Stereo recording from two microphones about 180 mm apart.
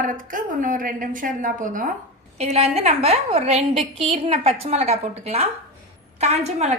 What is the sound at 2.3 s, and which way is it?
A woman's voice, 35° right (ahead or behind).